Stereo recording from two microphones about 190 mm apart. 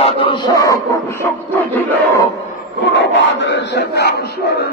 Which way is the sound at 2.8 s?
70° left (ahead or behind).